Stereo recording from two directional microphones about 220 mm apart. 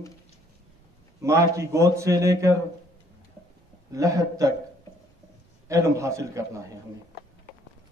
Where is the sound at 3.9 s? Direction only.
15° right (ahead or behind).